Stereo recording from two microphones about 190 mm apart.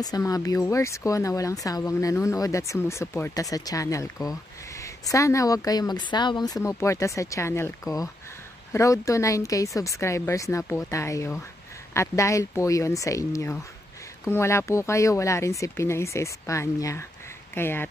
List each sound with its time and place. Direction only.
0.0 s speech: 20° left (ahead or behind)
8.7 s speech: 15° left (ahead or behind)